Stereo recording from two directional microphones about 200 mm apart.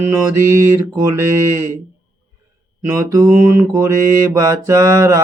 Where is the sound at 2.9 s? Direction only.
15° right (ahead or behind).